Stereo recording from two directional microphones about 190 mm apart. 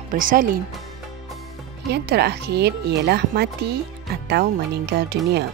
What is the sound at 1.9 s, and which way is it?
Speech, 60° right (ahead or behind).